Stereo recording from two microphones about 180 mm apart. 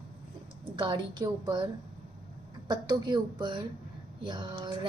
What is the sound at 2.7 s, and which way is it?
A woman's voice, 25° right (ahead or behind).